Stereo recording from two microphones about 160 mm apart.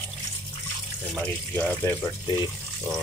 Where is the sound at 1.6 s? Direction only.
10° left (ahead or behind).